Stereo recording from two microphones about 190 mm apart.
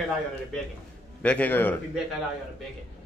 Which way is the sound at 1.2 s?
5° left (ahead or behind).